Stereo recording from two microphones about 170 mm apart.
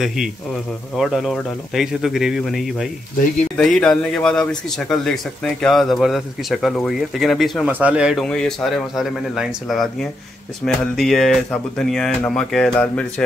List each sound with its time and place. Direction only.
0.0 s a man's voice: centre (ahead or behind)